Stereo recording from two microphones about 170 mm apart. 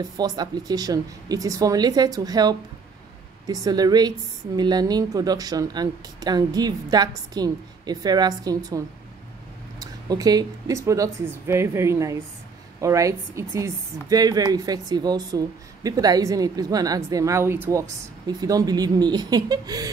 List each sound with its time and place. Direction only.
0.2 s speech: 25° right (ahead or behind)